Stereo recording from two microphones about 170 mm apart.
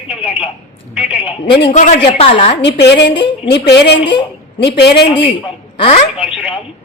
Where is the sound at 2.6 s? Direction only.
90° left.